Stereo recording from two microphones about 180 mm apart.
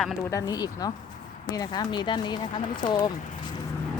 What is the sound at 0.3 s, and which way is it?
Speech, 20° left (ahead or behind).